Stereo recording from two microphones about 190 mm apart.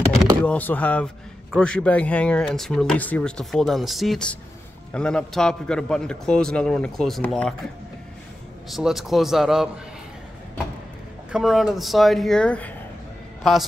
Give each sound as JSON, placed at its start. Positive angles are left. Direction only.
{"t": 0.5, "sound": "a man's voice", "side_deg": 10}
{"t": 8.6, "sound": "a man's voice", "side_deg": 0}
{"t": 11.3, "sound": "a man's voice", "side_deg": 0}